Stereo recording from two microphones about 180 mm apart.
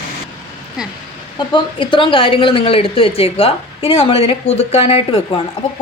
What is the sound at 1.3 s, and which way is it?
A woman's voice, 25° left (ahead or behind).